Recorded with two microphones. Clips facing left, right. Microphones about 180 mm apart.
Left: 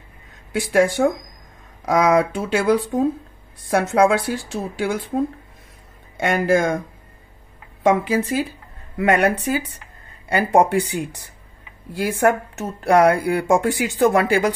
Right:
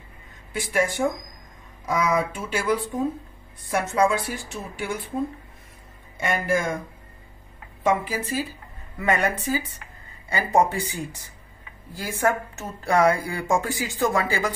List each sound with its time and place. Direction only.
0.5 s speech: 75° left (ahead or behind)
6.1 s speech: 70° left (ahead or behind)
7.8 s speech: 85° left
8.9 s speech: 70° left (ahead or behind)